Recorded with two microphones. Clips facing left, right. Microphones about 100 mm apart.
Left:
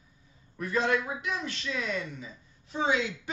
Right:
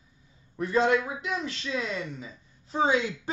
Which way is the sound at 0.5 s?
25° right (ahead or behind).